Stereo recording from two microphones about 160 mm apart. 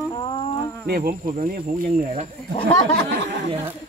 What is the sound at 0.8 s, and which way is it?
Speech, 70° right (ahead or behind).